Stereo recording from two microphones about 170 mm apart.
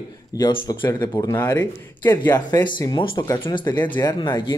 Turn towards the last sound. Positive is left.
turn(degrees=25)  # may be behind; listen again after turning